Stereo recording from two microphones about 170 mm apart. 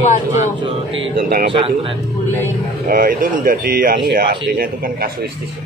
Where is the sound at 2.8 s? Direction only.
55° right (ahead or behind).